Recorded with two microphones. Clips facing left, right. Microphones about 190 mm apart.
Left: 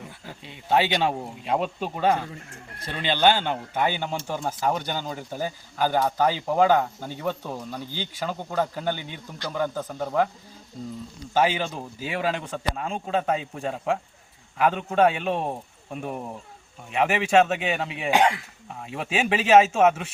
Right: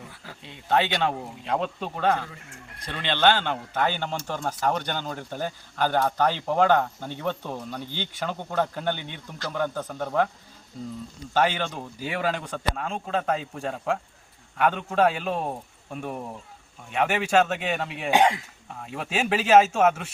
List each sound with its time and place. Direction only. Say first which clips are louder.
0.4 s a man's voice: left 1 dB; 5° left (ahead or behind)
11.3 s a man's voice: left 1 dB; 5° left (ahead or behind)
18.1 s speech: even; 20° right (ahead or behind)
18.7 s a man's voice: left 1 dB; centre (ahead or behind)